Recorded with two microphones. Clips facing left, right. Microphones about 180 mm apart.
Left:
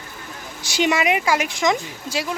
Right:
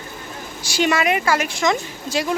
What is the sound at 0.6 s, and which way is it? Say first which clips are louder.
Speech: right 1 dB; 20° left (ahead or behind).